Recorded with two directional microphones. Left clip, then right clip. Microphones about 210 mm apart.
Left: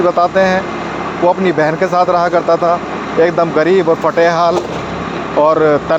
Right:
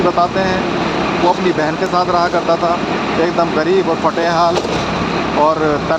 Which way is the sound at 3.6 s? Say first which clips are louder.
Left 3 dB; 50° left (ahead or behind).